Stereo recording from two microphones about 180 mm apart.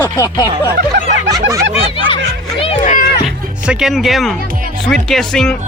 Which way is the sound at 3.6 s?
5° right (ahead or behind).